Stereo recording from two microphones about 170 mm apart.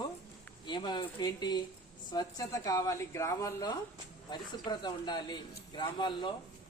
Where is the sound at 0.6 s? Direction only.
25° left (ahead or behind).